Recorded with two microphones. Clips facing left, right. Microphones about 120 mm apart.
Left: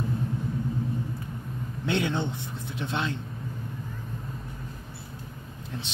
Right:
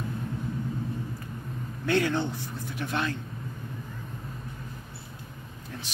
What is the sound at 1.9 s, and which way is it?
Speech, 20° left (ahead or behind).